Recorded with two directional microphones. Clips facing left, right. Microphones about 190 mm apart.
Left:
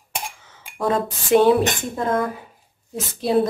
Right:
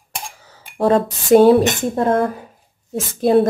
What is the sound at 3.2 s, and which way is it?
Speech, 50° right (ahead or behind).